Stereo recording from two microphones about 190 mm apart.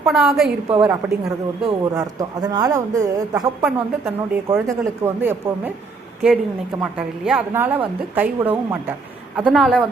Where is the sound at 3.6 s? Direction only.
5° right (ahead or behind).